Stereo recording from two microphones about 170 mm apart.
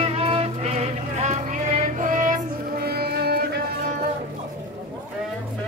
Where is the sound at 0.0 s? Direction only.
35° right (ahead or behind); by 3.6 s 70° right (ahead or behind).